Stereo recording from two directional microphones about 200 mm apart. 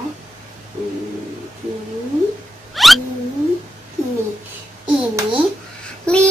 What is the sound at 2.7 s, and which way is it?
Rodents, centre (ahead or behind).